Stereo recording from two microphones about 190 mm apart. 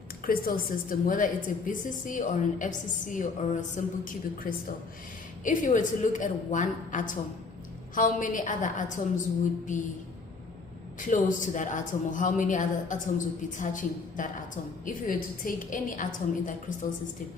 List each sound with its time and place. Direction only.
0.3 s speech: 50° left (ahead or behind)
11.0 s speech: 45° left (ahead or behind)